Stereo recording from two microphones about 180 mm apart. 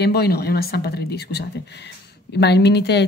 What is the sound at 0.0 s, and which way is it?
Speech, 65° left (ahead or behind).